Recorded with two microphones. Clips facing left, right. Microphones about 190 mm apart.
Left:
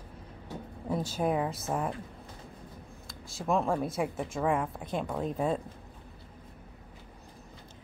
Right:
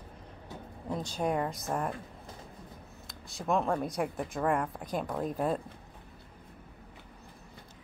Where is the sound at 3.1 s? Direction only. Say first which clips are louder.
Left 1 dB; centre (ahead or behind).